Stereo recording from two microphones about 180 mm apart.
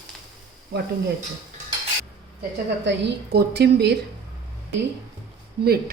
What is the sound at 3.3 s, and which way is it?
Speech, 65° right (ahead or behind).